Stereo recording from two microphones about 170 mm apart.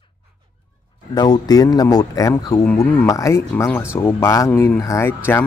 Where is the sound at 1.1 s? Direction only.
25° left (ahead or behind).